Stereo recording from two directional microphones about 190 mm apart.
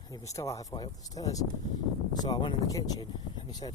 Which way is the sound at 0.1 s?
15° left (ahead or behind).